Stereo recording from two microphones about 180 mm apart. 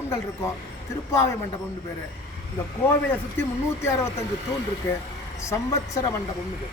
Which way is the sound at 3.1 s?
15° left (ahead or behind).